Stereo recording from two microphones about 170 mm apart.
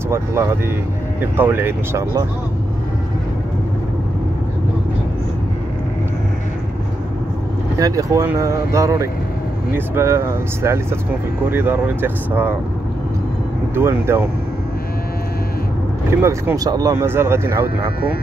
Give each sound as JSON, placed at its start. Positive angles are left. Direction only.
{"t": 0.1, "sound": "speech", "side_deg": -15}
{"t": 7.8, "sound": "speech", "side_deg": -20}
{"t": 13.7, "sound": "speech", "side_deg": -15}
{"t": 16.1, "sound": "speech", "side_deg": -15}